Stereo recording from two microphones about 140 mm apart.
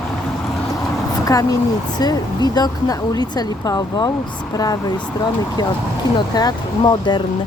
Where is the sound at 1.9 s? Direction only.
30° left (ahead or behind).